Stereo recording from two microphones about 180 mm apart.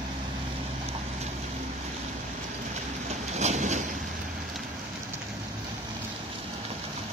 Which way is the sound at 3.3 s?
40° right (ahead or behind).